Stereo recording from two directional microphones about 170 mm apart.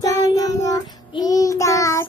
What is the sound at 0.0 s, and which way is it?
Child singing, 20° left (ahead or behind).